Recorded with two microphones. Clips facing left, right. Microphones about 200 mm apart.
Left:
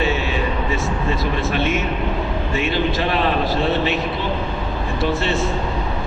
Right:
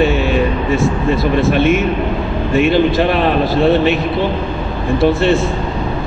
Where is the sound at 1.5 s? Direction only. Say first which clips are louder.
Right 8 dB; 55° right (ahead or behind).